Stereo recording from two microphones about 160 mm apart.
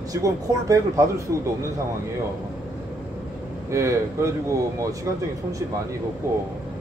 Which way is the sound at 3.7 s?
15° right (ahead or behind).